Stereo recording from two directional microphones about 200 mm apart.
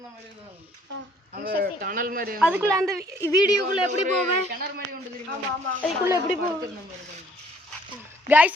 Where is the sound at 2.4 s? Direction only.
10° right (ahead or behind).